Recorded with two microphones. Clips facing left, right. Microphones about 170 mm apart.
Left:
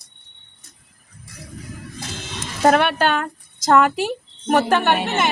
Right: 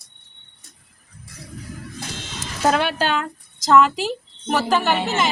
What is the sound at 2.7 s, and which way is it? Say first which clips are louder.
A woman's voice: left 3 dB; 55° left (ahead or behind).